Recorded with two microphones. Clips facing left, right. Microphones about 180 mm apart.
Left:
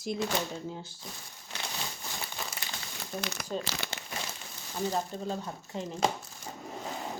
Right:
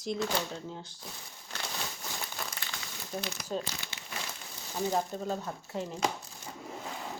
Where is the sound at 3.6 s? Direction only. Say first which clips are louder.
Left 4 dB; 90° left.